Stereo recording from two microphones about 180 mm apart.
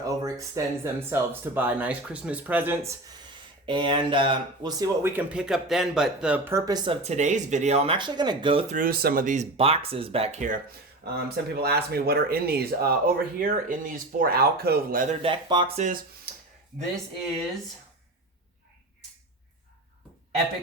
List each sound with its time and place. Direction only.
0.0 s speech: 20° right (ahead or behind)
3.7 s speech: 25° right (ahead or behind)
8.7 s speech: 55° right (ahead or behind)
11.5 s speech: 60° right (ahead or behind)
15.2 s speech: 30° right (ahead or behind)